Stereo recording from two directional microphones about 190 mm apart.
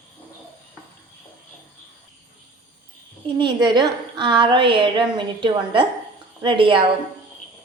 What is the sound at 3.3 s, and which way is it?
A woman's voice, 25° right (ahead or behind).